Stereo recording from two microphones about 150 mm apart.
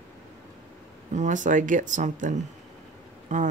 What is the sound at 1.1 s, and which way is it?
Speech, 55° right (ahead or behind).